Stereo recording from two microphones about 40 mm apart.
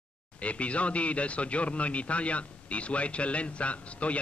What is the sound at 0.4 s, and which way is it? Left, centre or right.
A man's voice, left.